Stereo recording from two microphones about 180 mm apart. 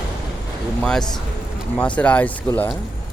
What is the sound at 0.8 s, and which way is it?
Speech, 5° left (ahead or behind).